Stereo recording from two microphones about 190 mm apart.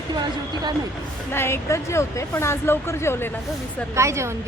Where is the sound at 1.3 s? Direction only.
15° left (ahead or behind).